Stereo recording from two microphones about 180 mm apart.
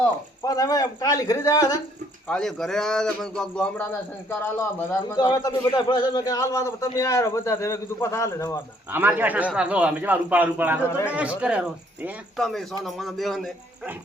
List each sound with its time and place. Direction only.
0.4 s a man's voice: 20° left (ahead or behind)
2.2 s a man's voice: 5° left (ahead or behind)
8.9 s a man's voice: 10° right (ahead or behind)
10.8 s a man's voice: 15° left (ahead or behind)
11.1 s a man's voice: 5° right (ahead or behind)